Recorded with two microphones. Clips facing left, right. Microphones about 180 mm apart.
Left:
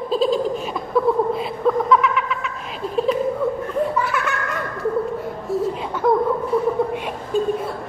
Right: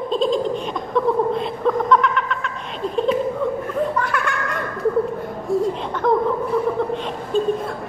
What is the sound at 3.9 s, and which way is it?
Laughter, 5° left (ahead or behind).